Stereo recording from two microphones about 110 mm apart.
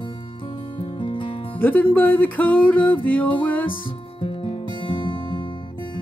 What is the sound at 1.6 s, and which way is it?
Music, 15° left (ahead or behind).